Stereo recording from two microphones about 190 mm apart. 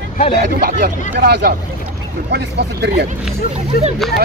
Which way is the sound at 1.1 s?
60° right (ahead or behind).